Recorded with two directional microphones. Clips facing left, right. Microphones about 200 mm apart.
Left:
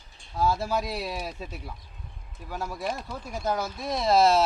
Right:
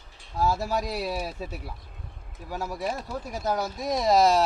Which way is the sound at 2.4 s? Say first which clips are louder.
Right 1 dB; 10° right (ahead or behind).